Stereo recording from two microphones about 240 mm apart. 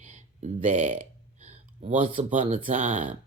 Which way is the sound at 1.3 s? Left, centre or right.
Right.